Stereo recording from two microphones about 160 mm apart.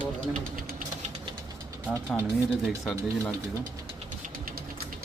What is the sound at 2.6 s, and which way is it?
Speech, 5° left (ahead or behind).